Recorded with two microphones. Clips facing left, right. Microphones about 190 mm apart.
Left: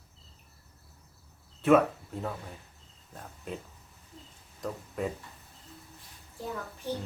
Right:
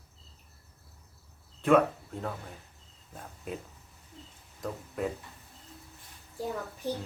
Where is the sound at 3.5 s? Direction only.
5° right (ahead or behind).